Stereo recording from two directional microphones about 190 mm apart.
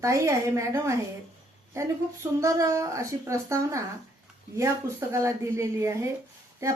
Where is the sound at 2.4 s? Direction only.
15° right (ahead or behind).